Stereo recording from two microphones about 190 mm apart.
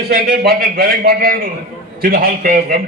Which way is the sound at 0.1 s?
50° right (ahead or behind).